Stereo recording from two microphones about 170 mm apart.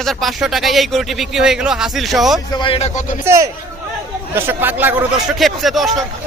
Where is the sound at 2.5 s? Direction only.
30° left (ahead or behind).